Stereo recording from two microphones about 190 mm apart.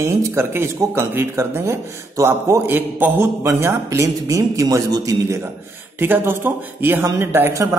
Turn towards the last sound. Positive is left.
turn(degrees=-15)  # may be behind; listen again after turning